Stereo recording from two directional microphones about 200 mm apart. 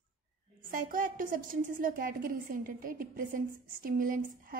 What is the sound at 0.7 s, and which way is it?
A woman's voice, 45° right (ahead or behind).